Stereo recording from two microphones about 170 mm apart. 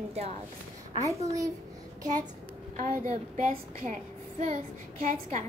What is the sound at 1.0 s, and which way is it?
Speech, 20° right (ahead or behind).